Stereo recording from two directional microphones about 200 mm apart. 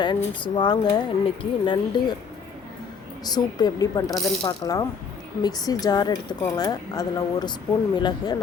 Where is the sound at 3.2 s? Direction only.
20° left (ahead or behind).